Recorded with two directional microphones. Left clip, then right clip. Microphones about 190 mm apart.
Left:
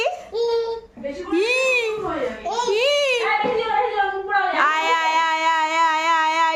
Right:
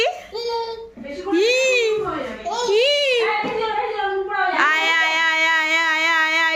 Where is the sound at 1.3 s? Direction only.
15° left (ahead or behind).